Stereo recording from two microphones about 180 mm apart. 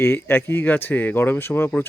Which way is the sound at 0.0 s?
10° left (ahead or behind).